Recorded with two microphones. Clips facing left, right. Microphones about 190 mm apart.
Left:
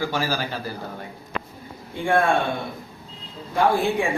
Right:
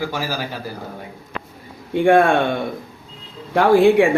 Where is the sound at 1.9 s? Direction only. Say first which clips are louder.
Right 8 dB; 65° right (ahead or behind).